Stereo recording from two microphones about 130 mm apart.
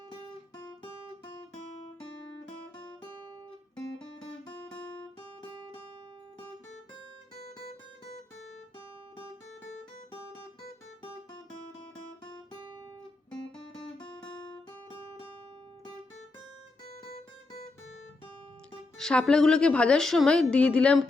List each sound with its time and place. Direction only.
7.3 s music: 55° left (ahead or behind)
18.9 s a woman's voice: 5° left (ahead or behind)